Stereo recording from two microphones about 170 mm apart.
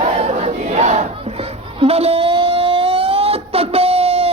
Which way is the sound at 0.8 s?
40° right (ahead or behind).